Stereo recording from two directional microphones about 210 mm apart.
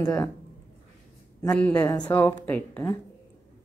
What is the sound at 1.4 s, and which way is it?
A woman's voice, 5° left (ahead or behind).